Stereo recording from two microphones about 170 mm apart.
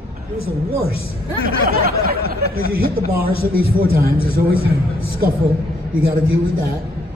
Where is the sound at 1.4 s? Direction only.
60° right (ahead or behind).